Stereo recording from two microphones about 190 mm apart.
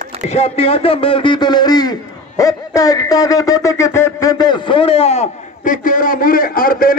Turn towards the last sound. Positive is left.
turn(degrees=50)  # may be behind; listen again after turning